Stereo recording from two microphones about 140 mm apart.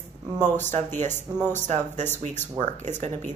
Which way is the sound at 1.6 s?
55° right (ahead or behind).